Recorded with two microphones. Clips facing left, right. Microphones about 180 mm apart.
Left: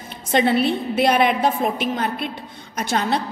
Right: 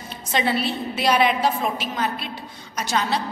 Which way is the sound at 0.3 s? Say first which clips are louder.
Left 5 dB; 55° left (ahead or behind).